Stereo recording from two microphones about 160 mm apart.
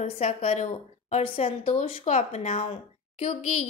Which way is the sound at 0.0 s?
40° left (ahead or behind).